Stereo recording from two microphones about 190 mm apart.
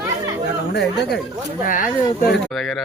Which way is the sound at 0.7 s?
65° left (ahead or behind).